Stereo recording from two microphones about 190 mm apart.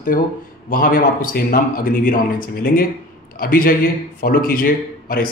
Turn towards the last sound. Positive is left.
turn(degrees=50)  # may be behind; listen again after turning